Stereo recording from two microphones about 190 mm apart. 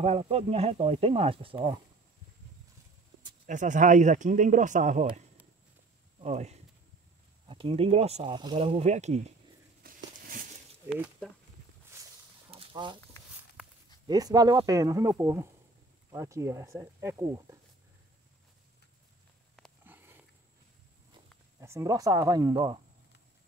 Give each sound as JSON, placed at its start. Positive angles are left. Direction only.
{"t": 0.0, "sound": "speech", "side_deg": -35}
{"t": 3.2, "sound": "speech", "side_deg": -40}
{"t": 6.2, "sound": "speech", "side_deg": -35}
{"t": 9.8, "sound": "a sound", "side_deg": -50}
{"t": 10.9, "sound": "speech", "side_deg": 0}
{"t": 11.9, "sound": "a sound", "side_deg": -15}
{"t": 12.4, "sound": "a sound", "side_deg": -25}
{"t": 14.0, "sound": "speech", "side_deg": -20}
{"t": 19.8, "sound": "sniff", "side_deg": -10}
{"t": 21.5, "sound": "speech", "side_deg": -15}